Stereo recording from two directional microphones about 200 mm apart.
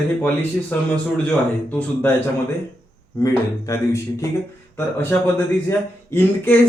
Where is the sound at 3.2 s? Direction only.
15° left (ahead or behind).